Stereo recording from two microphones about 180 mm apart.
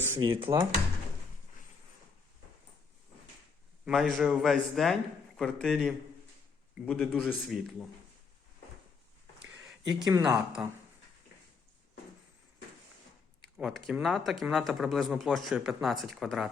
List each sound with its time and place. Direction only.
0.2 s speech: 30° right (ahead or behind)
0.4 s speech: 15° right (ahead or behind)
3.8 s speech: centre (ahead or behind)
9.8 s speech: 75° right (ahead or behind)
10.1 s speech: 20° right (ahead or behind)
13.4 s speech: centre (ahead or behind)